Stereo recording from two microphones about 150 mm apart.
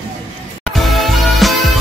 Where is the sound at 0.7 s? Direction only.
Centre (ahead or behind).